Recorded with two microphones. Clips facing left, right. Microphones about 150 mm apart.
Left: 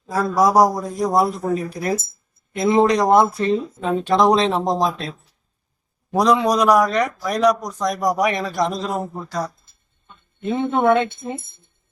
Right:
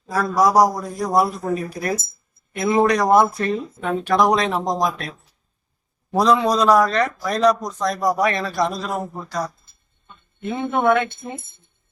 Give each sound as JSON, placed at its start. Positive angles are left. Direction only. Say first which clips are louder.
{"t": 0.1, "sound": "speech", "louder": "left 1 dB", "side_deg": 25}
{"t": 2.5, "sound": "speech", "louder": "left 2 dB", "side_deg": 20}
{"t": 6.1, "sound": "speech", "louder": "even", "side_deg": 15}